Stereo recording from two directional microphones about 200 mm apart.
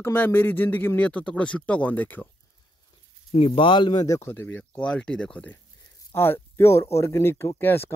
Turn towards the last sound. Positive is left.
turn(degrees=10)  # may be behind; listen again after turning